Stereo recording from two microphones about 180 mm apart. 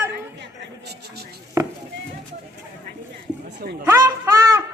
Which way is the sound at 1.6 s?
15° right (ahead or behind).